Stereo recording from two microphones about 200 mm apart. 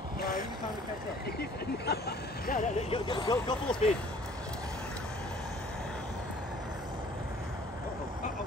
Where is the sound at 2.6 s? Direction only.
25° left (ahead or behind).